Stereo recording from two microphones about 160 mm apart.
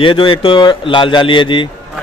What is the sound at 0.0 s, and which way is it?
A man's voice, 30° left (ahead or behind).